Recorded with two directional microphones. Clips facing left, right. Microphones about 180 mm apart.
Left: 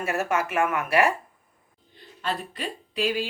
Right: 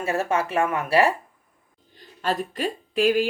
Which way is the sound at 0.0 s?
30° right (ahead or behind).